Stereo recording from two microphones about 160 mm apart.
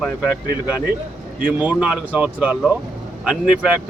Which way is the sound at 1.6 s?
10° right (ahead or behind).